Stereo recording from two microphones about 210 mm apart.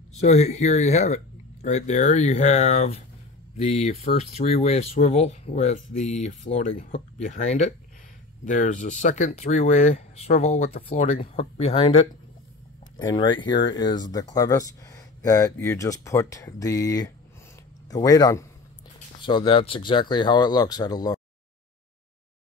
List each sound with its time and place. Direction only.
0.2 s speech: 30° left (ahead or behind)